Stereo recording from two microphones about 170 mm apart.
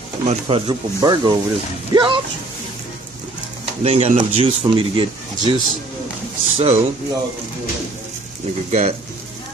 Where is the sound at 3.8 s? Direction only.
35° right (ahead or behind).